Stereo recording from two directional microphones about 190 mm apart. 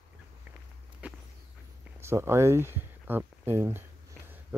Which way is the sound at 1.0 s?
10° right (ahead or behind).